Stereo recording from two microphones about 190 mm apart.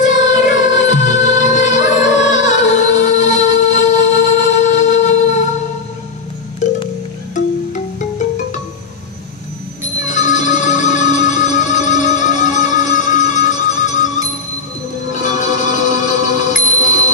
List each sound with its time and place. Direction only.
0.0 s music: 40° left (ahead or behind)
7.3 s music: 40° left (ahead or behind)
9.9 s music: 40° left (ahead or behind)
15.0 s bell: 40° left (ahead or behind)